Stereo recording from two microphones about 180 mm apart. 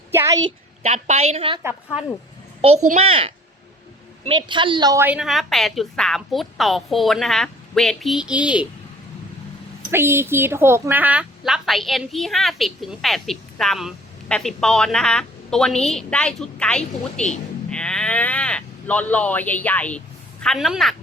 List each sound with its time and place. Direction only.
0.1 s a sound: 15° right (ahead or behind)
0.8 s a woman's voice: 40° right (ahead or behind); by 5.0 s 20° right (ahead or behind)
5.0 s a woman's voice: 5° right (ahead or behind)
9.9 s a woman's voice: 15° right (ahead or behind)